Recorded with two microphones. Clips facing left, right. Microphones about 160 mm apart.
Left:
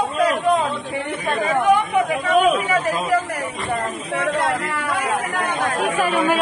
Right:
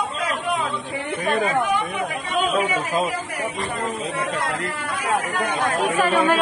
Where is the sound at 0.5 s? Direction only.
50° left (ahead or behind).